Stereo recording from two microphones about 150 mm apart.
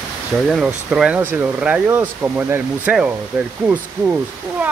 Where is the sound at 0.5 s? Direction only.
5° right (ahead or behind).